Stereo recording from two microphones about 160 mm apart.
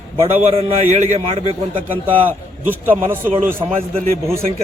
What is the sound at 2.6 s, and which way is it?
Speech, 10° right (ahead or behind).